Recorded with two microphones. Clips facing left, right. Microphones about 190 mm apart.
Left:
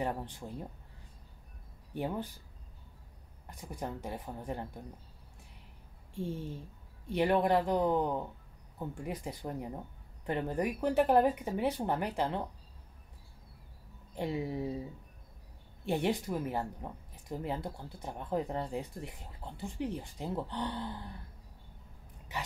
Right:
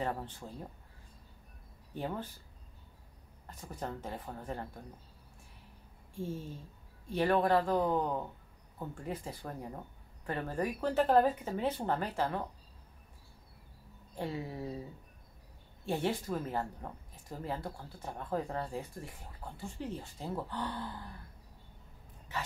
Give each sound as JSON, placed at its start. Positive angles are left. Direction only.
{"t": 0.0, "sound": "speech", "side_deg": 15}
{"t": 2.0, "sound": "speech", "side_deg": 15}
{"t": 3.4, "sound": "speech", "side_deg": 15}
{"t": 6.1, "sound": "speech", "side_deg": 20}
{"t": 14.1, "sound": "speech", "side_deg": 20}
{"t": 15.8, "sound": "speech", "side_deg": 20}